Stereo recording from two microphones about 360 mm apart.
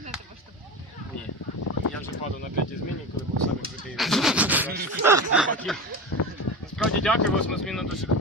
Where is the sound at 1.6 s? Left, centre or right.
Left.